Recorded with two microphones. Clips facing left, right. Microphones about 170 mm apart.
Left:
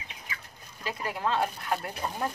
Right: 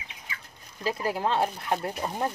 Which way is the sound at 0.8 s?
30° right (ahead or behind).